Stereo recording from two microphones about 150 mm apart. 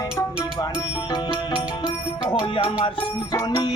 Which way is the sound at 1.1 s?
30° left (ahead or behind).